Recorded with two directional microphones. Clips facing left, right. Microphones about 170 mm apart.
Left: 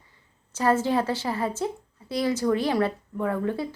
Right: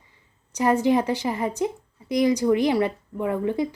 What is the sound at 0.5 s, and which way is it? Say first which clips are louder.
A woman's voice: right 3 dB; 15° right (ahead or behind).